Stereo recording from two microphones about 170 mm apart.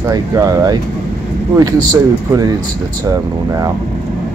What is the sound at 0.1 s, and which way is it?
Speech, 20° right (ahead or behind).